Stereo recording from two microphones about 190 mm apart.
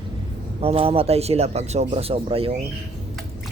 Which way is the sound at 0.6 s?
30° right (ahead or behind).